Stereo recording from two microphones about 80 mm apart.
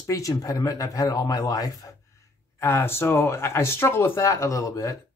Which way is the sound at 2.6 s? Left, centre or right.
Left.